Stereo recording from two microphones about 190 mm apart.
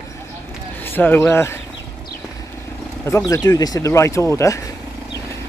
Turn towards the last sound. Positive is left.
turn(degrees=15)  # may be behind; listen again after turning